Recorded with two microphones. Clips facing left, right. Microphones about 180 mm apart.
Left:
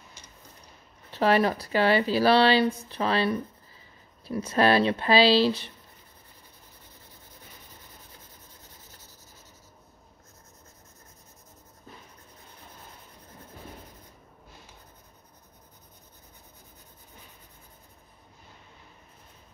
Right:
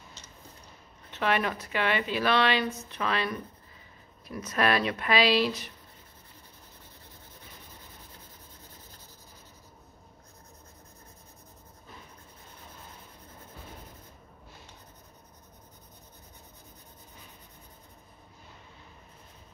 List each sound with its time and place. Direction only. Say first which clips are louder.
1.1 s speech: left 6 dB; 35° left (ahead or behind)